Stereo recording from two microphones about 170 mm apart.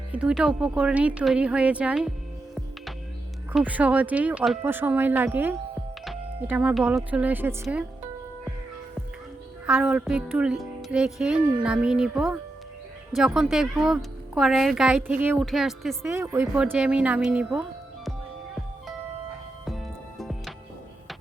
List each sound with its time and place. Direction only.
0.1 s speech: 5° right (ahead or behind)
3.5 s speech: 10° right (ahead or behind)
9.6 s speech: 5° right (ahead or behind)
15.4 s speech: centre (ahead or behind)
16.0 s speech: 15° right (ahead or behind)
16.6 s speech: 5° right (ahead or behind)
19.6 s music: centre (ahead or behind)